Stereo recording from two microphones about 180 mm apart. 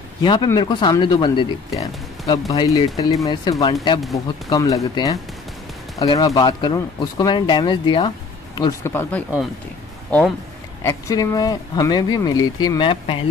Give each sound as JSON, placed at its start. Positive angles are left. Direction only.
{"t": 0.2, "sound": "speech", "side_deg": 25}
{"t": 10.8, "sound": "speech", "side_deg": 20}